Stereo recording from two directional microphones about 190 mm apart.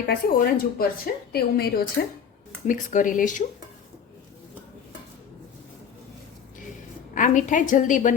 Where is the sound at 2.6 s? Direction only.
45° left (ahead or behind).